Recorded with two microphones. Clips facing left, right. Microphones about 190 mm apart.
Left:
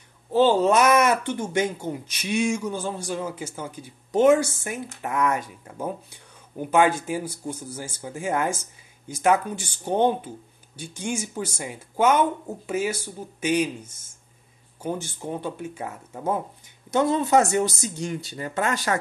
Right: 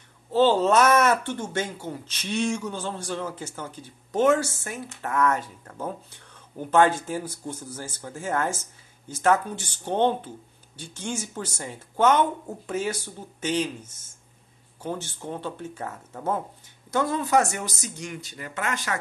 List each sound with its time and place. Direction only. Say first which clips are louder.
0.3 s speech: left 1 dB; 15° left (ahead or behind)
16.9 s speech: left 3 dB; 25° left (ahead or behind)